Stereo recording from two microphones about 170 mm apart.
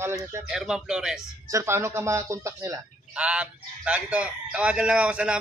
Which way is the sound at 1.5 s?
15° right (ahead or behind).